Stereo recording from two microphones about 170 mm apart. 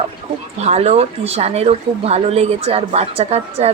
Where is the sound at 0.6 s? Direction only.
40° right (ahead or behind).